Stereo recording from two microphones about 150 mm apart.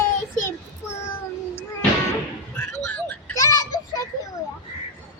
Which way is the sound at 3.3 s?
25° left (ahead or behind).